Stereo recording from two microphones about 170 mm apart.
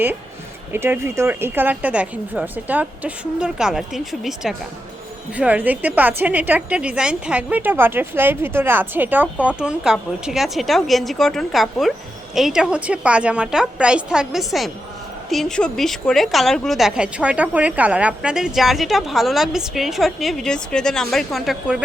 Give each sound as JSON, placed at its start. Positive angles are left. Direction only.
{"t": 0.7, "sound": "a woman's voice", "side_deg": -15}